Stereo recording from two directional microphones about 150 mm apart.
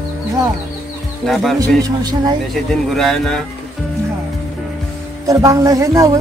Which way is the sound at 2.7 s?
Centre (ahead or behind).